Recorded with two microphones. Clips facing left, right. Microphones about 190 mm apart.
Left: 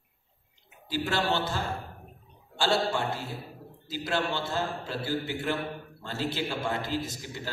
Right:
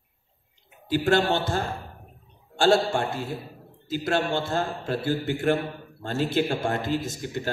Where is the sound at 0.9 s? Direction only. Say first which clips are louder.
Right 6 dB; 50° right (ahead or behind).